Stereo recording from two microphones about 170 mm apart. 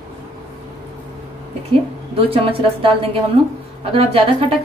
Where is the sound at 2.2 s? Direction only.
35° right (ahead or behind).